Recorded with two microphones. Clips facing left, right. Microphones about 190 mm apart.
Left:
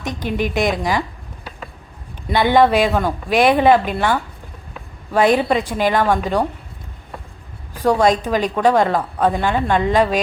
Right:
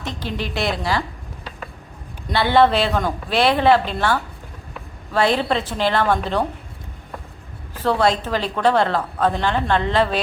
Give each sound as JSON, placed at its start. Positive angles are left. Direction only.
{"t": 0.0, "sound": "a woman's voice", "side_deg": 15}
{"t": 2.3, "sound": "a woman's voice", "side_deg": 15}
{"t": 7.7, "sound": "a woman's voice", "side_deg": 15}